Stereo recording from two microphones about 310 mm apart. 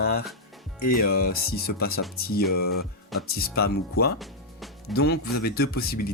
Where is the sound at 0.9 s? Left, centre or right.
Left.